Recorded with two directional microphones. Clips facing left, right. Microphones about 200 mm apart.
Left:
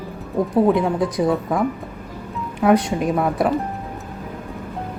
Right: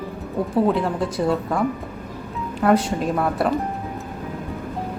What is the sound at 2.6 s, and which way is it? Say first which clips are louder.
Speech: left 2 dB; 10° left (ahead or behind).